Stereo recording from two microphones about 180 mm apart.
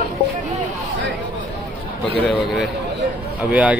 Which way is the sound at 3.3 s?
10° right (ahead or behind).